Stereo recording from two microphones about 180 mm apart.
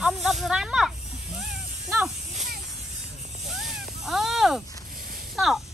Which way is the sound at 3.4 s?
Centre (ahead or behind).